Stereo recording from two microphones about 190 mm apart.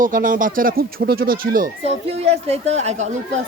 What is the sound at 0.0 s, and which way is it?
Speech, 45° right (ahead or behind).